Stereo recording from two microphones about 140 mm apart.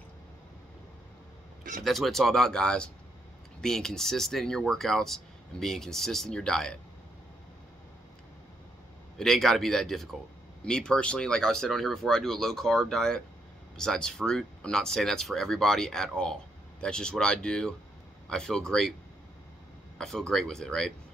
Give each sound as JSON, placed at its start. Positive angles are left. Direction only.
{"t": 1.6, "sound": "a sound", "side_deg": -75}
{"t": 1.9, "sound": "speech", "side_deg": 0}
{"t": 9.2, "sound": "speech", "side_deg": 0}
{"t": 20.0, "sound": "speech", "side_deg": 0}